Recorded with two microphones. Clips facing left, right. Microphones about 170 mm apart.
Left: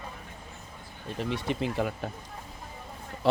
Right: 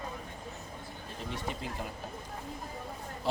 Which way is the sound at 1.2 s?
80° left.